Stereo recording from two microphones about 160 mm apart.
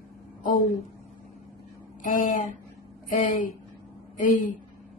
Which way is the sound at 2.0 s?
55° left (ahead or behind).